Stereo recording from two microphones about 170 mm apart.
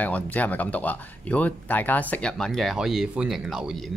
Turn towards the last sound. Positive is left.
turn(degrees=0)  # may be behind; listen again after turning